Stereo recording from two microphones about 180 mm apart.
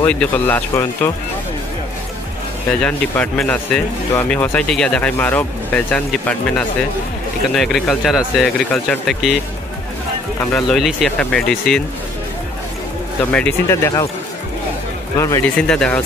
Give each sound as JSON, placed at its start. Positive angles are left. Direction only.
{"t": 0.0, "sound": "speech", "side_deg": 10}
{"t": 2.8, "sound": "speech", "side_deg": 5}
{"t": 10.4, "sound": "speech", "side_deg": 5}
{"t": 13.2, "sound": "speech", "side_deg": 5}
{"t": 15.1, "sound": "speech", "side_deg": 15}
{"t": 15.5, "sound": "speech", "side_deg": 5}